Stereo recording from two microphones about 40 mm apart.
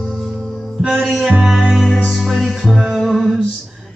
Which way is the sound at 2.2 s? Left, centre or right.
Centre.